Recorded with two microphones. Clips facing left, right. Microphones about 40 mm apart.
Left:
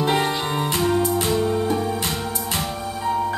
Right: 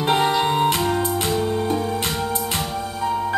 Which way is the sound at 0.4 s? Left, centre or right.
Right.